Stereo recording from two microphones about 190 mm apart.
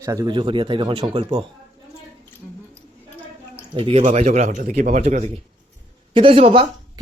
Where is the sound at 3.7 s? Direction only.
30° right (ahead or behind).